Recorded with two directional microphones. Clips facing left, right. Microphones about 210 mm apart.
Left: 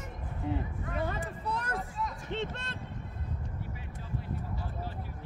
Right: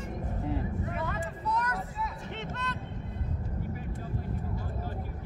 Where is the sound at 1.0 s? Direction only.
30° left (ahead or behind).